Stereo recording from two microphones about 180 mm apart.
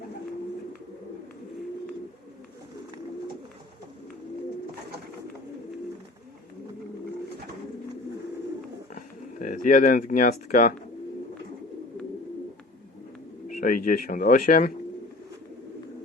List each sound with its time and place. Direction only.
9.0 s speech: 50° left (ahead or behind)
13.6 s speech: 50° left (ahead or behind)